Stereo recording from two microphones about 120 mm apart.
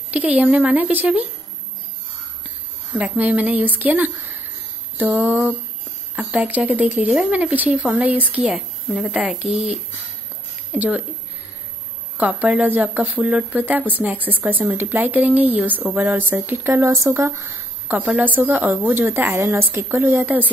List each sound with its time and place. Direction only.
0.1 s a woman's voice: 10° right (ahead or behind)
3.0 s a woman's voice: 10° right (ahead or behind)
12.2 s a woman's voice: 10° right (ahead or behind)